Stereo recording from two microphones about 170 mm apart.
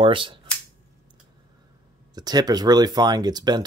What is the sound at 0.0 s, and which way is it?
Speech, 30° right (ahead or behind).